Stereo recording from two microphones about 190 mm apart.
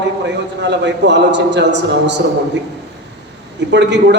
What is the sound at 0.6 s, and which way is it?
A man's voice, 65° right (ahead or behind).